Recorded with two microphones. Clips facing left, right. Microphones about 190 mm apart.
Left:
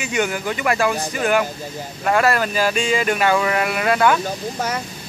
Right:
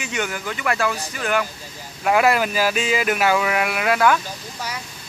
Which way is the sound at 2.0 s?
10° right (ahead or behind).